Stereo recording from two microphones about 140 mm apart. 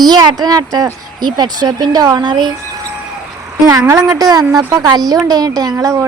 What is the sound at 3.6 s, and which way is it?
Speech, 25° right (ahead or behind).